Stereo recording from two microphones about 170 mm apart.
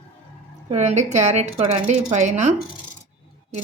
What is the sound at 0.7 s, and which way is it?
A woman's voice, 40° right (ahead or behind).